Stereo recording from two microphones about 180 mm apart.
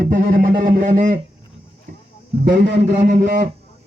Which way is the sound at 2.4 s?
75° right (ahead or behind).